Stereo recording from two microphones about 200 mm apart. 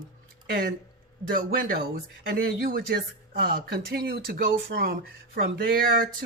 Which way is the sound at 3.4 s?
50° right (ahead or behind).